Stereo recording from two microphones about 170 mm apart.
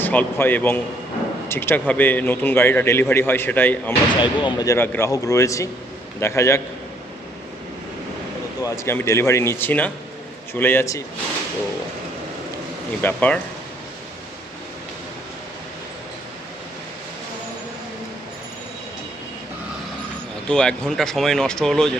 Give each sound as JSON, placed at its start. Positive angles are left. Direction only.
{"t": 0.0, "sound": "a man's voice", "side_deg": 10}
{"t": 4.2, "sound": "a man's voice", "side_deg": 25}
{"t": 8.6, "sound": "a man's voice", "side_deg": 15}
{"t": 13.0, "sound": "a man's voice", "side_deg": 10}
{"t": 20.5, "sound": "speech", "side_deg": 5}